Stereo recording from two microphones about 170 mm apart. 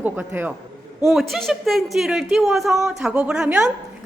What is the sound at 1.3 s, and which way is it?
A woman's voice, centre (ahead or behind).